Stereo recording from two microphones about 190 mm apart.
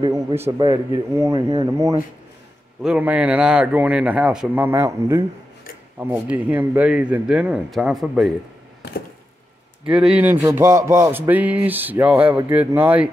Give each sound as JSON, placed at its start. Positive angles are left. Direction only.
{"t": 0.0, "sound": "a sound", "side_deg": -25}
{"t": 0.4, "sound": "speech", "side_deg": -20}
{"t": 9.8, "sound": "speech", "side_deg": -5}